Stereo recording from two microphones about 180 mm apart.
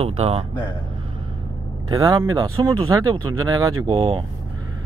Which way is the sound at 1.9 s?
25° right (ahead or behind).